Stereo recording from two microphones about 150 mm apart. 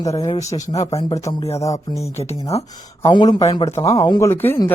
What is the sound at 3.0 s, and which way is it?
A man's voice, 30° left (ahead or behind).